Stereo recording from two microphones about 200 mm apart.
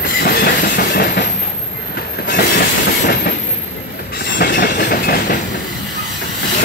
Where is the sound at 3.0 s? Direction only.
50° left (ahead or behind).